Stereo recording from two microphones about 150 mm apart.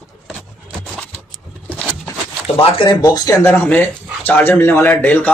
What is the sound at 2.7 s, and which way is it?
Speech, 30° left (ahead or behind).